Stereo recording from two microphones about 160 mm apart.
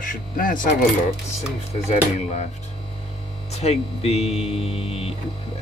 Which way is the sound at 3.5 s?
40° left (ahead or behind).